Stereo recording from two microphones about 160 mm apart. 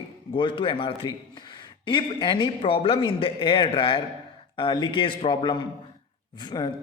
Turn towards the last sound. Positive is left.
turn(degrees=25)  # may be behind; listen again after turning